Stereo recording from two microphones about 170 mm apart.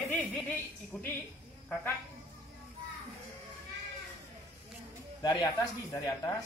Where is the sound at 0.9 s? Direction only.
10° left (ahead or behind).